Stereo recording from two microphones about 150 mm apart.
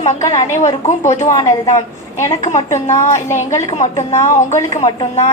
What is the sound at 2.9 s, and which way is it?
A woman's voice, 50° left (ahead or behind).